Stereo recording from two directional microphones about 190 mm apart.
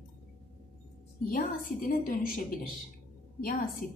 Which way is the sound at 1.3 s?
50° left (ahead or behind).